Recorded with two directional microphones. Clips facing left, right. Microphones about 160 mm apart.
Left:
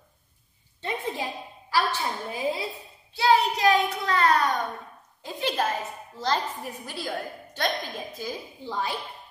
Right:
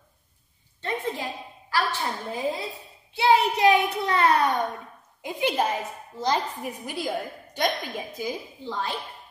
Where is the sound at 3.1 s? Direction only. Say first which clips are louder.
Right 1 dB; 20° right (ahead or behind).